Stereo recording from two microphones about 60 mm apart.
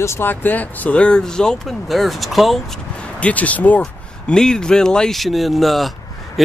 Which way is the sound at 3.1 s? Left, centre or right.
Left.